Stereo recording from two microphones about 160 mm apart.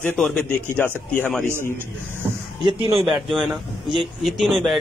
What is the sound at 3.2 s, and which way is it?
Speech, centre (ahead or behind).